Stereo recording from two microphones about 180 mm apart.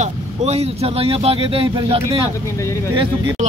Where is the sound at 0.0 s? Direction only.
35° right (ahead or behind).